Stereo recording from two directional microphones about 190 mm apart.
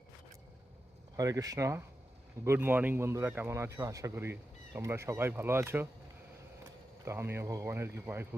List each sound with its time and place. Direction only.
1.1 s speech: 20° right (ahead or behind)
7.0 s speech: 15° right (ahead or behind)